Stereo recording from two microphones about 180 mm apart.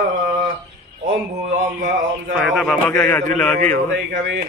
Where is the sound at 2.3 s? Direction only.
Centre (ahead or behind).